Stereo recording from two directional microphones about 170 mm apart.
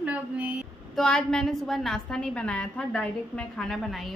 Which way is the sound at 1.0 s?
5° left (ahead or behind).